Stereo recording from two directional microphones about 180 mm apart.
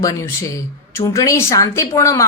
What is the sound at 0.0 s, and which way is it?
A woman's voice, 20° left (ahead or behind).